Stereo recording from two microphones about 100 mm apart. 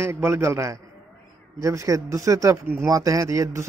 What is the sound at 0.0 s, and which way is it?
A man's voice, 25° right (ahead or behind).